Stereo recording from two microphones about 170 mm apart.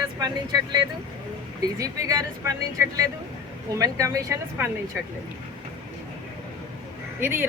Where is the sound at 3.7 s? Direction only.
20° right (ahead or behind).